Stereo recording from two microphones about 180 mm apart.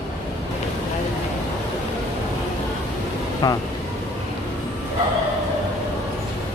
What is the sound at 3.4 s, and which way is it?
Speech, 25° left (ahead or behind).